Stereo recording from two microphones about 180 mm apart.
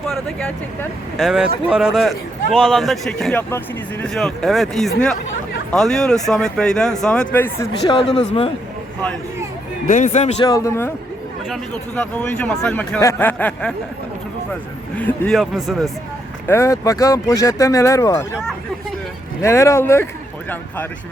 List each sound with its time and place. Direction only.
0.1 s speech: 5° left (ahead or behind)
8.2 s speech: 35° left (ahead or behind)
9.8 s speech: 45° left (ahead or behind)
10.4 s speech: 20° left (ahead or behind)
11.4 s speech: 5° left (ahead or behind)
14.9 s speech: 10° left (ahead or behind)
15.4 s speech: centre (ahead or behind)
16.5 s speech: 15° left (ahead or behind)
19.4 s speech: 15° left (ahead or behind)